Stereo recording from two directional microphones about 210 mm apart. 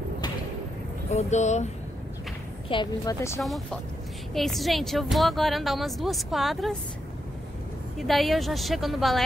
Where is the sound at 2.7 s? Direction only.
20° left (ahead or behind).